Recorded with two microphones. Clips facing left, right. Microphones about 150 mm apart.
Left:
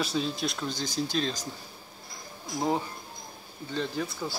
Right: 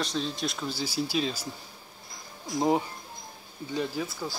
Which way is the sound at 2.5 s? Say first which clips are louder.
Right 3 dB; 20° right (ahead or behind).